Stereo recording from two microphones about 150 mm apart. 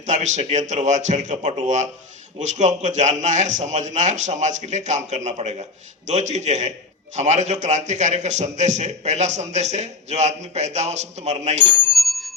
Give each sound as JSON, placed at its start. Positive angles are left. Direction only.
{"t": 0.0, "sound": "a man's voice", "side_deg": -50}
{"t": 11.9, "sound": "bell", "side_deg": 0}